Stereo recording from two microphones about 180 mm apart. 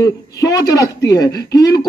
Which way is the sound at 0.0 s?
20° left (ahead or behind).